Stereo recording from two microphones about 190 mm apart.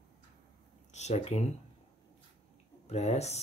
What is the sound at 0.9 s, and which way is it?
Speech, 35° left (ahead or behind).